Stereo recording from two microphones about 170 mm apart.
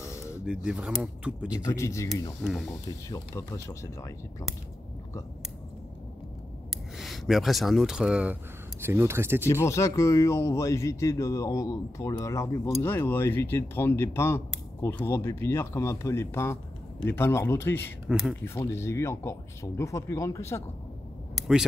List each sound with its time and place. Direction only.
0.0 s a sound: 15° left (ahead or behind)
0.5 s speech: 5° right (ahead or behind)
1.5 s speech: 15° left (ahead or behind)
2.4 s speech: centre (ahead or behind)
3.1 s speech: 20° left (ahead or behind)
7.0 s speech: centre (ahead or behind)
9.5 s speech: 15° left (ahead or behind)
18.0 s speech: centre (ahead or behind)
18.4 s speech: 15° left (ahead or behind)
21.4 s vehicle: 5° right (ahead or behind)